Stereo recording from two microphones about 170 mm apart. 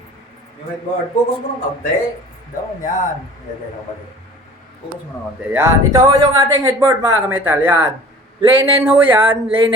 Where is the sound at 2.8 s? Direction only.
50° left (ahead or behind).